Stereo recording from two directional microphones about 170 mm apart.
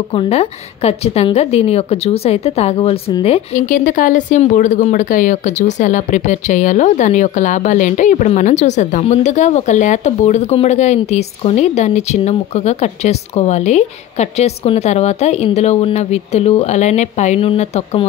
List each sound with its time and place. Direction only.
0.1 s speech: 35° left (ahead or behind)
3.6 s speech: 50° left (ahead or behind)